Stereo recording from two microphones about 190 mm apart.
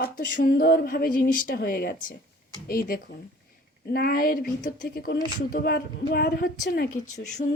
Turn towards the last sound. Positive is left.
turn(degrees=40)  # may be behind; listen again after turning